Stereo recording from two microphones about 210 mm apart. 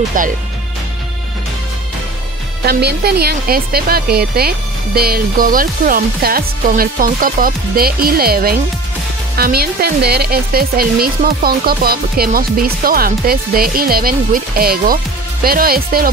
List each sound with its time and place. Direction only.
0.2 s speech: 40° right (ahead or behind)
2.6 s speech: 50° right (ahead or behind)